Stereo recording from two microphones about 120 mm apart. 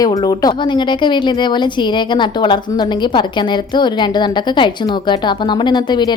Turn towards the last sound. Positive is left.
turn(degrees=40)  # may be behind; listen again after turning